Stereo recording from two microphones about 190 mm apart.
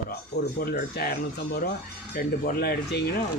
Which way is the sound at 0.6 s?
50° left (ahead or behind).